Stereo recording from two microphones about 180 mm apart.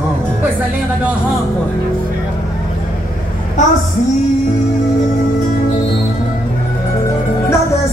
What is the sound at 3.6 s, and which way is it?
Speech, 45° left (ahead or behind).